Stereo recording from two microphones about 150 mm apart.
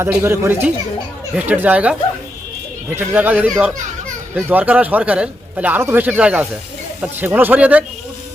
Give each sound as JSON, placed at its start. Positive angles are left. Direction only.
{"t": 0.2, "sound": "a man's voice", "side_deg": -15}